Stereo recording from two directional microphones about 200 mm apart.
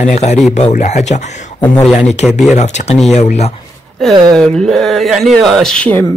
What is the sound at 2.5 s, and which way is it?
Speech, 35° left (ahead or behind).